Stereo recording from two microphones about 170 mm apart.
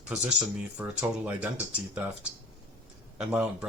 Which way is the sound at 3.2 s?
5° right (ahead or behind).